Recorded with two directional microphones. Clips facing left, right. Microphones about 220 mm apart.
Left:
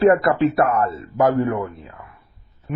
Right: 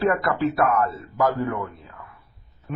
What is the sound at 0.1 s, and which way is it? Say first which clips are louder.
A man's voice: left 6 dB; 25° left (ahead or behind).